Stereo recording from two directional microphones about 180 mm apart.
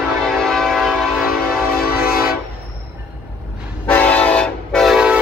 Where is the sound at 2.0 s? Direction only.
55° left (ahead or behind).